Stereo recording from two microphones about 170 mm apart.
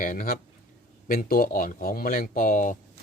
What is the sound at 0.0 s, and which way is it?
Speech, 50° left (ahead or behind).